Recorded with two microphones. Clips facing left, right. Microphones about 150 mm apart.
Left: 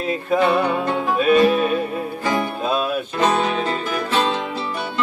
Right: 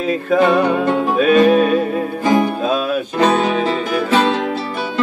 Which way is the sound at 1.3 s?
45° right (ahead or behind).